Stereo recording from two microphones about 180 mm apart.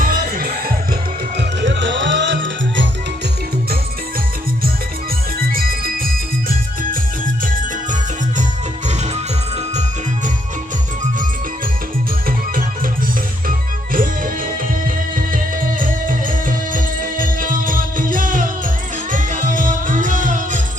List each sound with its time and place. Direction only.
0.0 s music: 55° right (ahead or behind)
1.4 s music: 85° right
5.4 s music: 55° right (ahead or behind)
8.9 s music: 40° right (ahead or behind)
13.9 s music: 50° right (ahead or behind)
15.8 s music: 50° right (ahead or behind)